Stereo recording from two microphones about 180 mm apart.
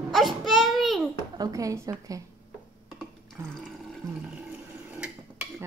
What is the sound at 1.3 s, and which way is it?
Speech, 20° right (ahead or behind).